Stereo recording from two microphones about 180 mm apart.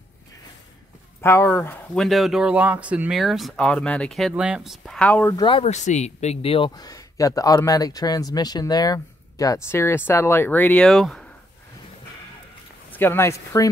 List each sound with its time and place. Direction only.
1.2 s speech: 15° left (ahead or behind)
5.3 s speech: 25° left (ahead or behind)
5.7 s speech: 40° left (ahead or behind); by 11.2 s centre (ahead or behind)
12.9 s speech: 10° left (ahead or behind)